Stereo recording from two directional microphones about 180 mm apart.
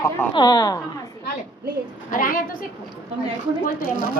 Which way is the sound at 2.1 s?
50° left (ahead or behind).